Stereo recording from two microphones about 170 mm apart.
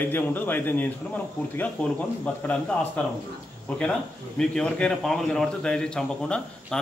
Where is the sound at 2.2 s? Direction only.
10° left (ahead or behind).